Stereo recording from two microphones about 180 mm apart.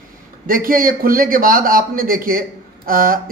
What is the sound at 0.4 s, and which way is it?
Speech, 50° right (ahead or behind).